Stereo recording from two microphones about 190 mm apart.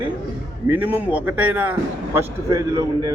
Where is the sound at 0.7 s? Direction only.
10° right (ahead or behind).